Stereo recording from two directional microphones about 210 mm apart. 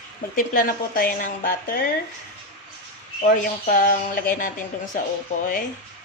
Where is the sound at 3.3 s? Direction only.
40° left (ahead or behind).